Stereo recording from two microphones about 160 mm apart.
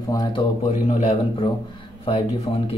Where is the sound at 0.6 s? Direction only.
45° left (ahead or behind).